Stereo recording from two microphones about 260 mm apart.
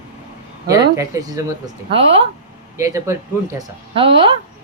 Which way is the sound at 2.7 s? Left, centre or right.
Centre.